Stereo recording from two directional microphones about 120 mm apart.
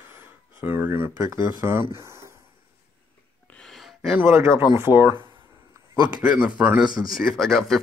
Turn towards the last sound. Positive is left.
turn(degrees=5)  # may be behind; listen again after turning